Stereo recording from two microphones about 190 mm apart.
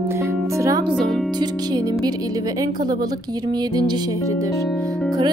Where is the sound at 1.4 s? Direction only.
20° right (ahead or behind).